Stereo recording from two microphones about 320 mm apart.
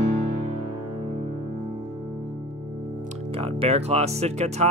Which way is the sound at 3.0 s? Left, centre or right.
Centre.